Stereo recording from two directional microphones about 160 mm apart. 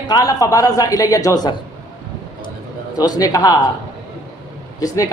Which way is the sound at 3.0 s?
25° left (ahead or behind).